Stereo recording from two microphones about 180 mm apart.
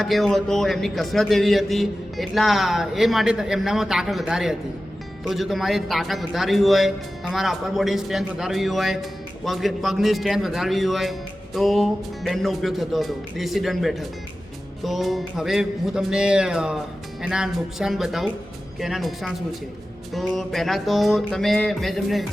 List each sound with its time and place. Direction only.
0.0 s speech: centre (ahead or behind)